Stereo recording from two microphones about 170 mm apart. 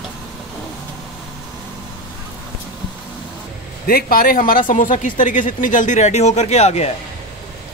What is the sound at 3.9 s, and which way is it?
Speech, 60° left (ahead or behind).